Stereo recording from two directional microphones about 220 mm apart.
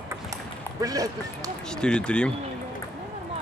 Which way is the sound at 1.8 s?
5° left (ahead or behind).